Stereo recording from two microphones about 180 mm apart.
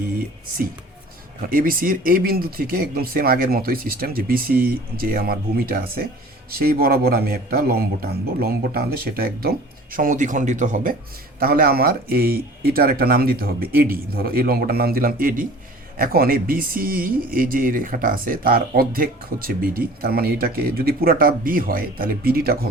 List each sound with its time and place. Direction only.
1.5 s speech: 50° right (ahead or behind)